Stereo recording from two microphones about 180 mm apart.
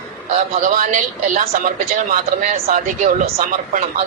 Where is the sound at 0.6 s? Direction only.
45° right (ahead or behind).